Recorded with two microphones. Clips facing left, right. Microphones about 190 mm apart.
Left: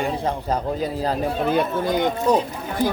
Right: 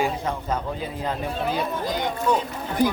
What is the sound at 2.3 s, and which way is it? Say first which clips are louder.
Speech: left 3 dB; 35° left (ahead or behind).